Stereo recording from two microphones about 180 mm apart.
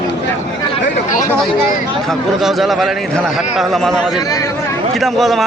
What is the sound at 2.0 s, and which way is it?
A man's voice, centre (ahead or behind).